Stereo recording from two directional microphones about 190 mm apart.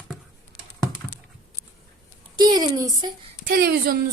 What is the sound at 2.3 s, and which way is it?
Speech, 20° right (ahead or behind).